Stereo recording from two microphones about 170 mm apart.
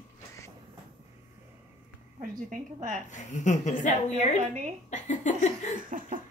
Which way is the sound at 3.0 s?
45° left (ahead or behind).